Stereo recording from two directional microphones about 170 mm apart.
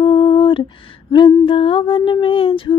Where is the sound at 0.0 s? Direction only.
30° left (ahead or behind).